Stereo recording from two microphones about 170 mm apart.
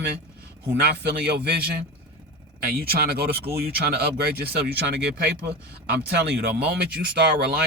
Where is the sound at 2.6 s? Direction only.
60° right (ahead or behind).